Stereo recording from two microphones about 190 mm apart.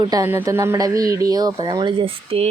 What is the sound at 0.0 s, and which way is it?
Speech, 20° right (ahead or behind).